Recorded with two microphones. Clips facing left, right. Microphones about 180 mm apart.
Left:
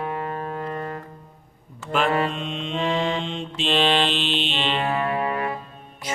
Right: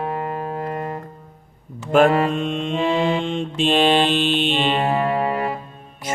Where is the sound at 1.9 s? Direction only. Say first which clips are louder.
Right 7 dB; 45° right (ahead or behind).